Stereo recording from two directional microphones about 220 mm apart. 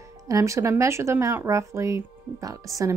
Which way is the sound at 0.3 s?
15° right (ahead or behind).